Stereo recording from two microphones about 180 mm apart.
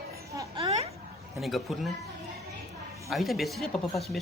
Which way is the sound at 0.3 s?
30° right (ahead or behind).